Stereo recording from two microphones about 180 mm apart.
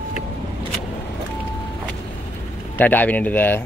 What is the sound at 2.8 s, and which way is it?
Speech, 10° left (ahead or behind).